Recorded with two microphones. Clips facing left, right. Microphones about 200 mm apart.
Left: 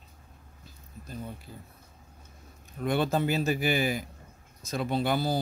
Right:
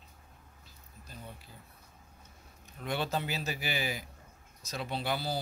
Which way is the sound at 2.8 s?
50° left (ahead or behind).